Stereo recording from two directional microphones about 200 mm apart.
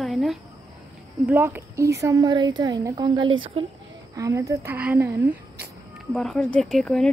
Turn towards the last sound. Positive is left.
turn(degrees=0)  # may be behind; listen again after turning